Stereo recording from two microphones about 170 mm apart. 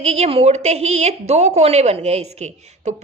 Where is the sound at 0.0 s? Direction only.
40° right (ahead or behind).